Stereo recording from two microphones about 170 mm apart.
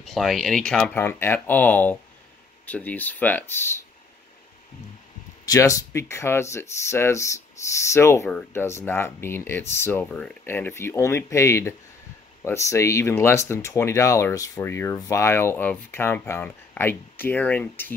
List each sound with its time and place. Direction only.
0.0 s speech: centre (ahead or behind)
5.4 s speech: 20° left (ahead or behind)